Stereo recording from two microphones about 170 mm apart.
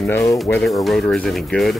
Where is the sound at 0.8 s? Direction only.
Centre (ahead or behind).